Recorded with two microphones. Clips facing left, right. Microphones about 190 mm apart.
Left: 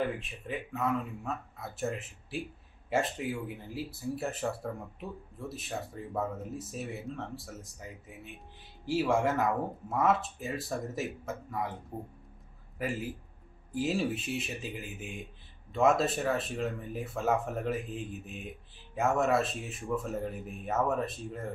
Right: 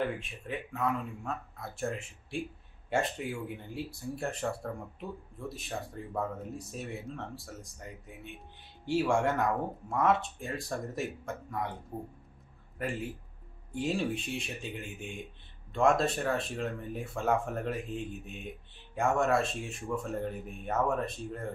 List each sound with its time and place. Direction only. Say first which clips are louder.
0.0 s speech: even; centre (ahead or behind)
12.8 s speech: left 1 dB; 5° left (ahead or behind)